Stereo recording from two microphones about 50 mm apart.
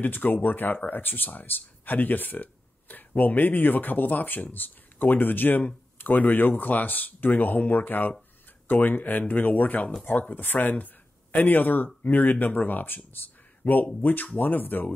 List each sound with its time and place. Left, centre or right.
0.0 s speech: left
10.4 s speech: left
13.6 s speech: left